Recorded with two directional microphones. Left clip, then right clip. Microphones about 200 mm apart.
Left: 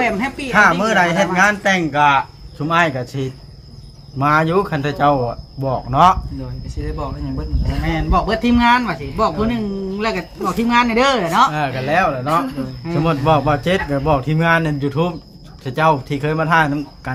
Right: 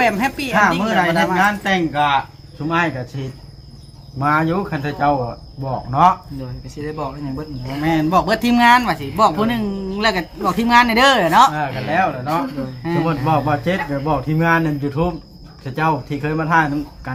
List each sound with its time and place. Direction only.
0.0 s speech: 60° right (ahead or behind)
0.5 s speech: 55° left (ahead or behind)
6.7 s speech: 15° right (ahead or behind)
7.9 s speech: 60° right (ahead or behind)
11.5 s speech: 55° left (ahead or behind)
13.0 s speech: 40° left (ahead or behind)